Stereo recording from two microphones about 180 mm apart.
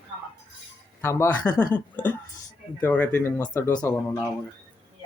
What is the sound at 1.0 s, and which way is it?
Speech, 15° left (ahead or behind).